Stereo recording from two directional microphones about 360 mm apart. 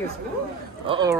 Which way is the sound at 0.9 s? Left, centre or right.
Centre.